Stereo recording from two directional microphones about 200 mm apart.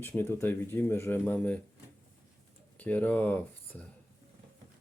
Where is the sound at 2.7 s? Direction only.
10° left (ahead or behind).